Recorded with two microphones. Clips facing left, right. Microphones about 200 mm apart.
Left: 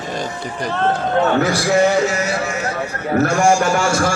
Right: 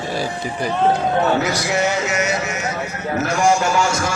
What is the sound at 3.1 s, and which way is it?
Speech, 50° left (ahead or behind).